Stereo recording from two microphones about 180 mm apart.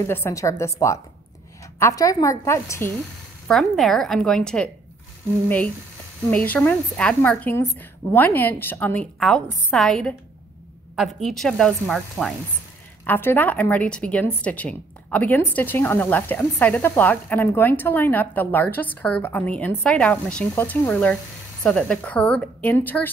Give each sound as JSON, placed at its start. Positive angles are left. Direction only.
{"t": 0.1, "sound": "a woman's voice", "side_deg": 15}
{"t": 3.4, "sound": "a woman's voice", "side_deg": 0}
{"t": 6.3, "sound": "a woman's voice", "side_deg": 10}